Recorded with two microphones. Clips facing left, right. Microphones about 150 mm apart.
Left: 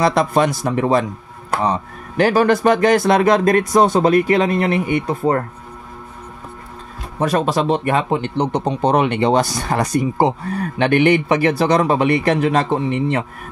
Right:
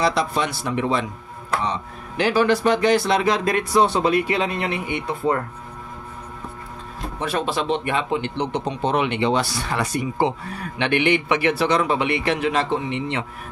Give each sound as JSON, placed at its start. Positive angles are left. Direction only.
{"t": 0.0, "sound": "speech", "side_deg": 50}
{"t": 7.2, "sound": "speech", "side_deg": 40}